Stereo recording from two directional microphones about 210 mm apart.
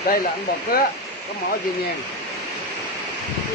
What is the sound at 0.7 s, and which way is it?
Speech, 45° left (ahead or behind).